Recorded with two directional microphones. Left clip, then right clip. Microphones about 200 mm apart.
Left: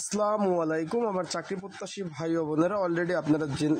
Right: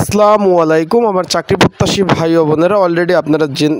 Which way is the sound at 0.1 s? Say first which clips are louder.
Right 17 dB; 45° right (ahead or behind).